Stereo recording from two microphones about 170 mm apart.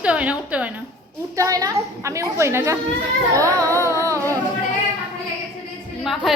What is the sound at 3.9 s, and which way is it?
Music, 20° right (ahead or behind).